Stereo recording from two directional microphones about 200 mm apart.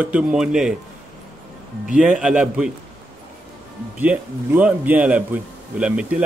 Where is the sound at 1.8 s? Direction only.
5° right (ahead or behind).